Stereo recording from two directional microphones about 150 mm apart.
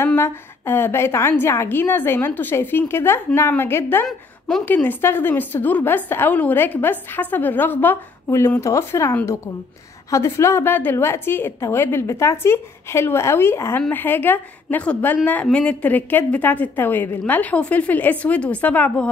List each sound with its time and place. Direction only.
0.0 s a woman's voice: 15° left (ahead or behind)